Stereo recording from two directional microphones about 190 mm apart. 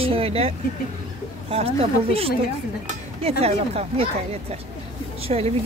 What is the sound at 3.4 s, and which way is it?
Speech, 35° right (ahead or behind).